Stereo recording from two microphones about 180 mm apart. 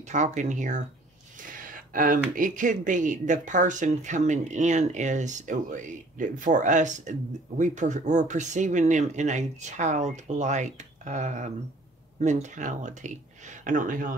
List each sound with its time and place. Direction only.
0.1 s speech: 40° right (ahead or behind)